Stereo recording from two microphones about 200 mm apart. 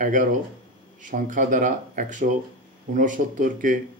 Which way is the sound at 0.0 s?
40° right (ahead or behind).